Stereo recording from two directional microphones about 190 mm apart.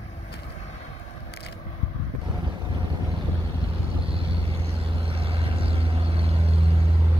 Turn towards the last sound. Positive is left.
turn(degrees=-30)  # may be behind; listen again after turning